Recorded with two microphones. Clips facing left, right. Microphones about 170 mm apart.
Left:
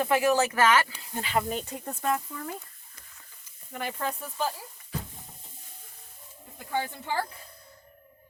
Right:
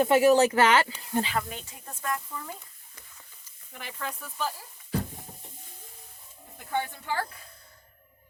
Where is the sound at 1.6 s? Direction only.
65° left (ahead or behind).